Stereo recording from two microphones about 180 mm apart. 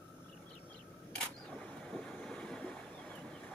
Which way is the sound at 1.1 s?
Centre (ahead or behind).